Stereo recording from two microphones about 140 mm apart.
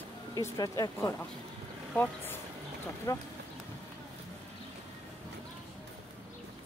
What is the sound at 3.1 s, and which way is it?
Speech, 25° left (ahead or behind).